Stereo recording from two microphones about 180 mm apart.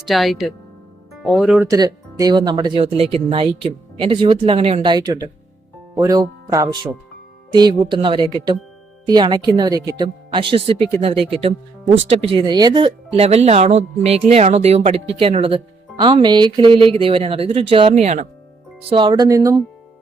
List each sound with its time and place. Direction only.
0.0 s speech: centre (ahead or behind)
1.6 s speech: 20° right (ahead or behind); by 18.3 s 40° right (ahead or behind)
18.9 s speech: 25° right (ahead or behind)